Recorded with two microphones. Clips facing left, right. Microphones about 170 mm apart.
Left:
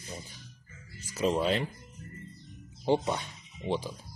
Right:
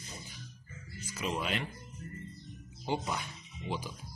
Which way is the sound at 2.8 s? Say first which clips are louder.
Left 7 dB; 30° left (ahead or behind).